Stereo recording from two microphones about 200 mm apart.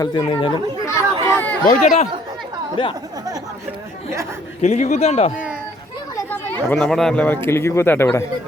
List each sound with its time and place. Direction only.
0.0 s speech: 25° left (ahead or behind)
0.9 s chatter: 15° left (ahead or behind)
1.6 s speech: 35° left (ahead or behind)
4.6 s speech: 35° left (ahead or behind)
6.1 s speech: 10° left (ahead or behind)